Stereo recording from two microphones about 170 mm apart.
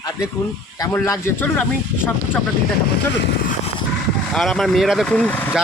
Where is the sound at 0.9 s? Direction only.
15° left (ahead or behind).